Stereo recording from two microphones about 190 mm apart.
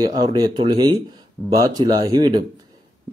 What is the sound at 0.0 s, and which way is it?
A man's voice, 20° right (ahead or behind).